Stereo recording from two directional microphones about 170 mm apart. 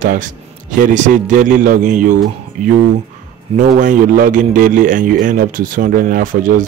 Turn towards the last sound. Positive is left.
turn(degrees=-55)  # may be behind; listen again after turning